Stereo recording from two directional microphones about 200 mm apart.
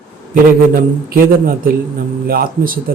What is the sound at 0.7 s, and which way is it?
A man's voice, 45° right (ahead or behind).